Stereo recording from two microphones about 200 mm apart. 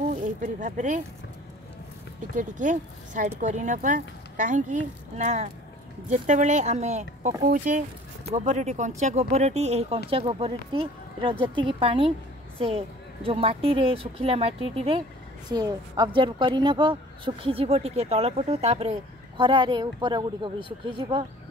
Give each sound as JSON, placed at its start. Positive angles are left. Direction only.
{"t": 0.0, "sound": "speech", "side_deg": -40}
{"t": 2.3, "sound": "a woman's voice", "side_deg": -40}